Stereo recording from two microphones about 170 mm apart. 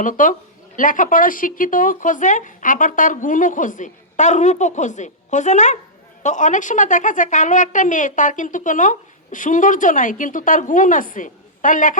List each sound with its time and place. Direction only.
0.0 s a woman's voice: 50° left (ahead or behind)